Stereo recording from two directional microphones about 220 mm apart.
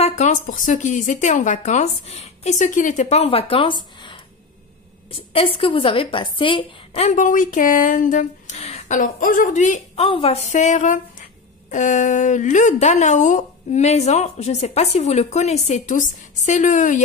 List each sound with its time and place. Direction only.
0.0 s a woman's voice: 30° left (ahead or behind)
5.3 s a woman's voice: 25° left (ahead or behind)